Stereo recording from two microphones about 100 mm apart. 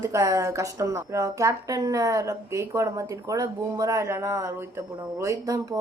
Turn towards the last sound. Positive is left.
turn(degrees=-30)  # may be behind; listen again after turning